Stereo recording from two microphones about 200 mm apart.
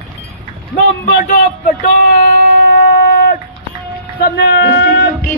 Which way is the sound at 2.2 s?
45° left (ahead or behind).